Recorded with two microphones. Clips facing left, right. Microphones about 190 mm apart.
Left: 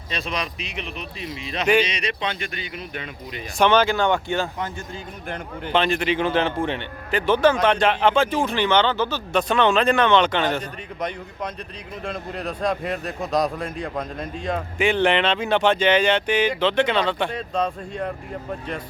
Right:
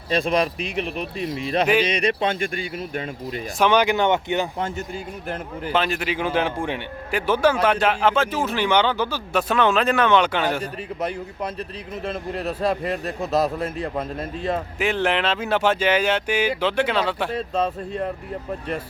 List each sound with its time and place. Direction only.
0.1 s speech: 50° right (ahead or behind)
3.6 s speech: 10° right (ahead or behind)
5.3 s a man's voice: 5° right (ahead or behind)